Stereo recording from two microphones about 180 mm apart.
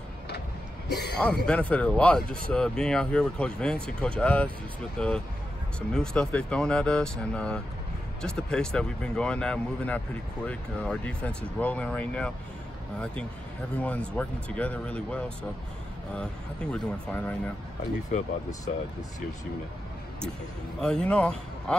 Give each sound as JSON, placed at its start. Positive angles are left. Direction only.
{"t": 0.8, "sound": "a sound", "side_deg": 65}
{"t": 1.2, "sound": "speech", "side_deg": 5}
{"t": 13.7, "sound": "speech", "side_deg": 5}
{"t": 16.7, "sound": "speech", "side_deg": 10}
{"t": 18.1, "sound": "speech", "side_deg": 45}
{"t": 20.8, "sound": "speech", "side_deg": 5}